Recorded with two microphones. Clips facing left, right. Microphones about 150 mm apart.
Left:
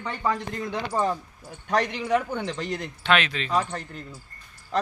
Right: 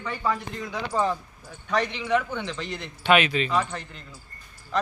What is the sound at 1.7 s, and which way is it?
Speech, 45° left (ahead or behind).